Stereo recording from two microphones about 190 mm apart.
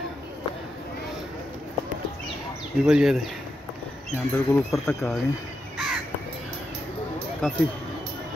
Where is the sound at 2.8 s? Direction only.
5° right (ahead or behind).